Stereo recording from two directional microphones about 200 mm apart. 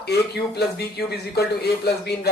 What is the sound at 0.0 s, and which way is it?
A man's voice, 55° left (ahead or behind).